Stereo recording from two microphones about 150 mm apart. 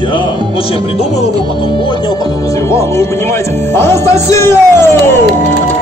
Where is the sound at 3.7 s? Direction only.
15° left (ahead or behind).